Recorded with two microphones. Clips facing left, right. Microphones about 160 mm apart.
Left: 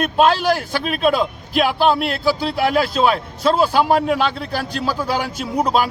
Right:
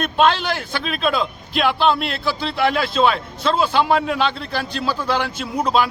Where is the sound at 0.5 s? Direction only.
50° left (ahead or behind).